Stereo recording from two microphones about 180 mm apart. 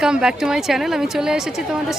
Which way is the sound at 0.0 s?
5° right (ahead or behind).